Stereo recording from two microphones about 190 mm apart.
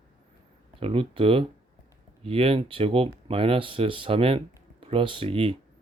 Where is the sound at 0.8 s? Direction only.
30° right (ahead or behind).